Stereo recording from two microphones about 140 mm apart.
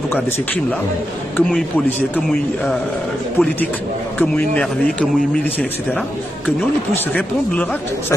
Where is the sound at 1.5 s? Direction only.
10° left (ahead or behind).